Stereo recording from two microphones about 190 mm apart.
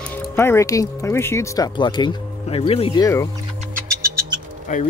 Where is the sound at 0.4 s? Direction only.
15° left (ahead or behind).